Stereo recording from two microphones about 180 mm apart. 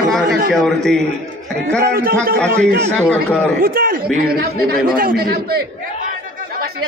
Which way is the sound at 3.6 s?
55° right (ahead or behind).